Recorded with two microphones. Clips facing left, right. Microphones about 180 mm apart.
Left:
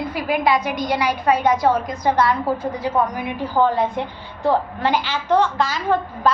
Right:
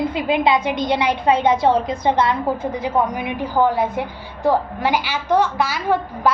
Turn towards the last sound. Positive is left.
turn(degrees=-10)  # may be behind; listen again after turning